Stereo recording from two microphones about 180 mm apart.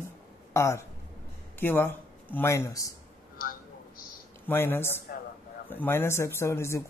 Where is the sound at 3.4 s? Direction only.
55° left (ahead or behind).